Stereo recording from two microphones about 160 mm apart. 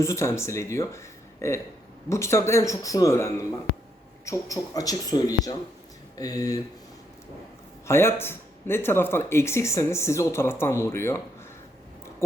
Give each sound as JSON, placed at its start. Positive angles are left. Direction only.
{"t": 0.0, "sound": "speech", "side_deg": 20}
{"t": 7.9, "sound": "speech", "side_deg": 15}